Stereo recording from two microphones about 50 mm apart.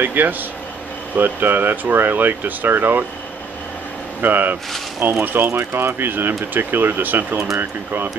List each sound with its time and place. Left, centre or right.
0.0 s speech: right
4.2 s speech: right